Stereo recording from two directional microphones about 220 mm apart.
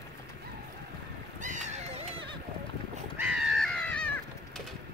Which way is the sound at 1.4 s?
35° right (ahead or behind).